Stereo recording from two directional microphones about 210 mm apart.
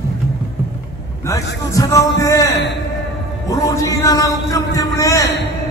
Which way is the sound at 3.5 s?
15° left (ahead or behind).